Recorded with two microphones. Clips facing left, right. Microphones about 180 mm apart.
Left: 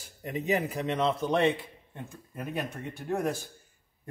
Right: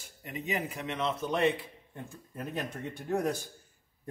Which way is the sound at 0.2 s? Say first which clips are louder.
Left 6 dB; 40° left (ahead or behind).